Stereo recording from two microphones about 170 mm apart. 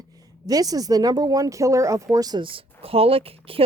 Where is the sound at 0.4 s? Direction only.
20° right (ahead or behind).